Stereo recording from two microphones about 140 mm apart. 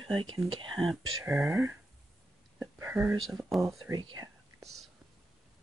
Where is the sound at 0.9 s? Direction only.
Centre (ahead or behind).